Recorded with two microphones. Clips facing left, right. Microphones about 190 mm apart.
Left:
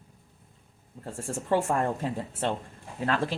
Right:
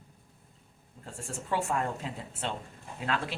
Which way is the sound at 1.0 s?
50° left (ahead or behind).